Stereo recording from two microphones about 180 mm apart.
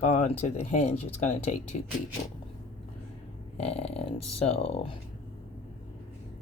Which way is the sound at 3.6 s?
35° left (ahead or behind).